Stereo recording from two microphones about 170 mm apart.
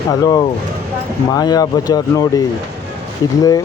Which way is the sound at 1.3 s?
25° left (ahead or behind).